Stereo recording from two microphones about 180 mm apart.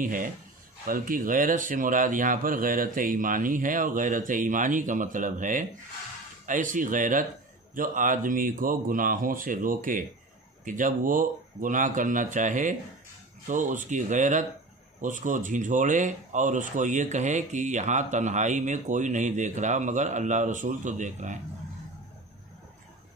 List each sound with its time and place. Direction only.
0.0 s speech: 50° right (ahead or behind)